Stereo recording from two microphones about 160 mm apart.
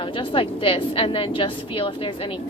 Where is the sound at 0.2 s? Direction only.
35° left (ahead or behind).